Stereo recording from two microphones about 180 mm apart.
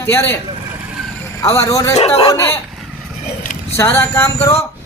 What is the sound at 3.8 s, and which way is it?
Speech, 15° left (ahead or behind).